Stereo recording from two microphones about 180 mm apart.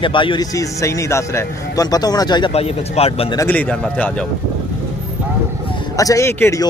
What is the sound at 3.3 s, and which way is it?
Speech, 10° left (ahead or behind).